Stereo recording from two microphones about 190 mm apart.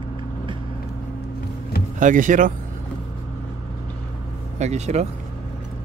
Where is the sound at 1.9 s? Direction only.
45° right (ahead or behind).